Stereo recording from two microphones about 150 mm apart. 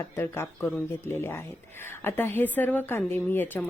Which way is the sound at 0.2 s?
15° left (ahead or behind).